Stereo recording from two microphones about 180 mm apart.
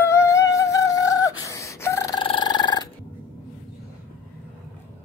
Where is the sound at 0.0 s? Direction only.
15° left (ahead or behind).